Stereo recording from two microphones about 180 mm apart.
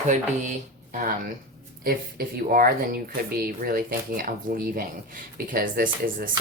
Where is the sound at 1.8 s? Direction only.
55° right (ahead or behind).